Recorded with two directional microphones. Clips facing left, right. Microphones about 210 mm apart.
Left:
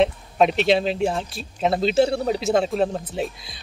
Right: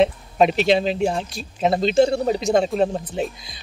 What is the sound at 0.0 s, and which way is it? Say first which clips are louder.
Speech: right 1 dB; centre (ahead or behind).